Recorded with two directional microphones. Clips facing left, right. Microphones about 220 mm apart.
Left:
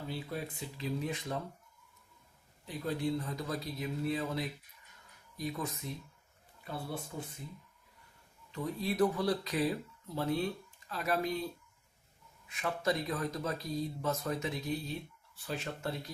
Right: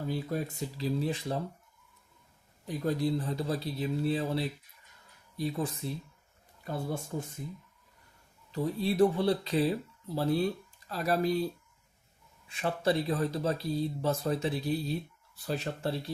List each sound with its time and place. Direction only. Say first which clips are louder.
0.1 s speech: right 6 dB; 45° right (ahead or behind)
2.6 s speech: right 5 dB; 45° right (ahead or behind)
6.7 s speech: right 5 dB; 45° right (ahead or behind)
8.5 s speech: right 5 dB; 30° right (ahead or behind)
12.5 s speech: right 4 dB; 30° right (ahead or behind)